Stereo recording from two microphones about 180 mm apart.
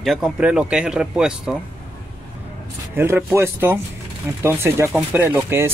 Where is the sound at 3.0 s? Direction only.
15° right (ahead or behind).